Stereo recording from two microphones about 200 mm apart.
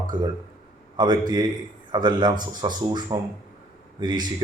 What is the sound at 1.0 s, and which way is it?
Speech, 20° right (ahead or behind).